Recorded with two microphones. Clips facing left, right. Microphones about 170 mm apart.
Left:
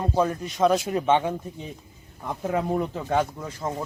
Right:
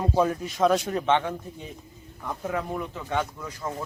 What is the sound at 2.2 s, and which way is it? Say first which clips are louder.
Speech: left 4 dB; 25° left (ahead or behind).